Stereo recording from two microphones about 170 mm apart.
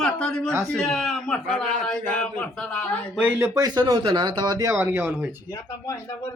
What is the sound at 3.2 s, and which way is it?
Speech, 15° right (ahead or behind).